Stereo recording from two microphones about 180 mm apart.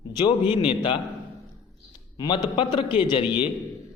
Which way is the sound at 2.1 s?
25° left (ahead or behind).